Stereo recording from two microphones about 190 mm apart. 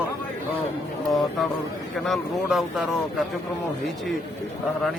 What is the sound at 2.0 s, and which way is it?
Speech, centre (ahead or behind).